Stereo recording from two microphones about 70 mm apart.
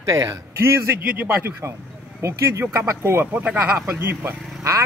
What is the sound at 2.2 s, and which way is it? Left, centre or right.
A man's voice, right.